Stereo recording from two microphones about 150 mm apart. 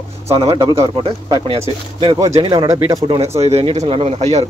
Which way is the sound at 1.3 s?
35° right (ahead or behind).